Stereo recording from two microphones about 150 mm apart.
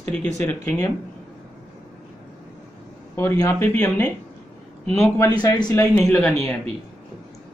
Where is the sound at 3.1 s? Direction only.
20° left (ahead or behind).